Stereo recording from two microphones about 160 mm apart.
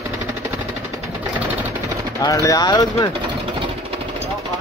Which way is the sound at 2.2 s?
20° left (ahead or behind).